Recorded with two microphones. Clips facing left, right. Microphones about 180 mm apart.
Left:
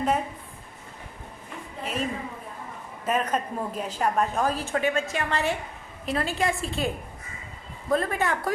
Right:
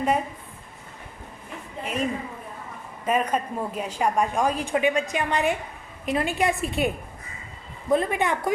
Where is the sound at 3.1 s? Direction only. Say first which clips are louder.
Right 2 dB; 10° right (ahead or behind).